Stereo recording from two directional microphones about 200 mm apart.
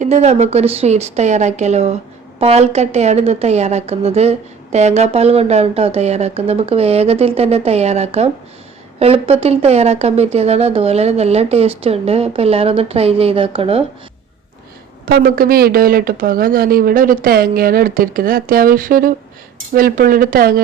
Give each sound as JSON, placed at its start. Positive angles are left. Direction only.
{"t": 0.0, "sound": "a woman's voice", "side_deg": -35}
{"t": 15.0, "sound": "speech", "side_deg": -50}